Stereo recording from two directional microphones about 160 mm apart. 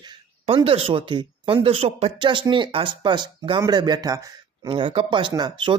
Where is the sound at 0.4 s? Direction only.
35° right (ahead or behind).